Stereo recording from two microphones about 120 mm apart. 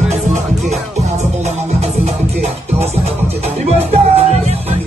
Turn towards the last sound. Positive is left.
turn(degrees=-60)  # may be behind; listen again after turning